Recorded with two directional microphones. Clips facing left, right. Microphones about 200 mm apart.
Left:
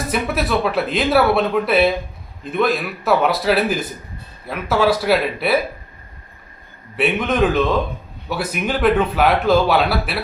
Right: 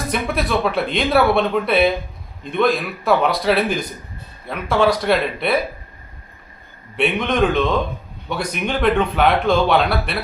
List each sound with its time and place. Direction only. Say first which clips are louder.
0.1 s speech: left 1 dB; 5° left (ahead or behind)
6.9 s speech: even; 5° left (ahead or behind)